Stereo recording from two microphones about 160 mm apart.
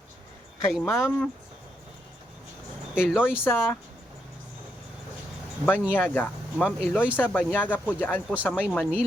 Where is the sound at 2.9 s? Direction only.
5° right (ahead or behind).